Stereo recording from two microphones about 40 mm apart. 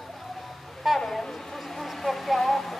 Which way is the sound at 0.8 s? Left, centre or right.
Centre.